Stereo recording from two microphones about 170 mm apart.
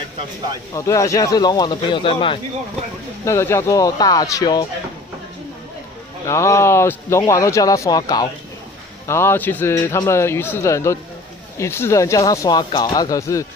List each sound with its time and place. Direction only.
0.7 s speech: 20° left (ahead or behind)
3.3 s speech: 15° left (ahead or behind)
6.2 s speech: 15° left (ahead or behind)